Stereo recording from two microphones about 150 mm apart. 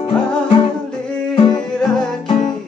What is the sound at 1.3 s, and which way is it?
Music, 30° left (ahead or behind).